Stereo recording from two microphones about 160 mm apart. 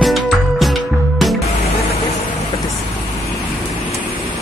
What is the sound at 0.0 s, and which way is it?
Music, centre (ahead or behind).